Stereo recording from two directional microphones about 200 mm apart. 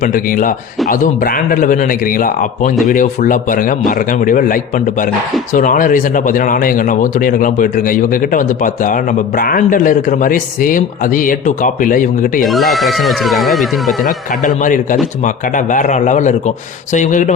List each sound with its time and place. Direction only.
0.0 s a man's voice: 45° left (ahead or behind)
12.5 s speech: centre (ahead or behind)
14.0 s speech: 40° left (ahead or behind)